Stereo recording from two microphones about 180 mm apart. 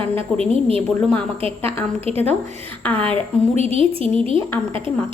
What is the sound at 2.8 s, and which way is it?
Speech, 10° left (ahead or behind).